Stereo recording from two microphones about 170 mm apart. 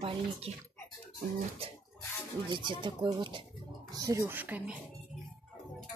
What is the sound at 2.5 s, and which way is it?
Speech, 30° right (ahead or behind).